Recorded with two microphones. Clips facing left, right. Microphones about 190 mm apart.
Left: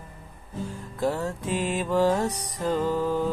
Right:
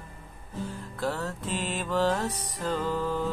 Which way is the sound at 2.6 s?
15° left (ahead or behind).